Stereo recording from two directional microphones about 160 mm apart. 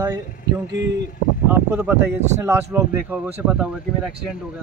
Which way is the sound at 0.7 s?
90° right.